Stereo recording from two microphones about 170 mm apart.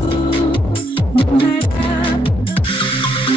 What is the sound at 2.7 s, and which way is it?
Music, 30° left (ahead or behind).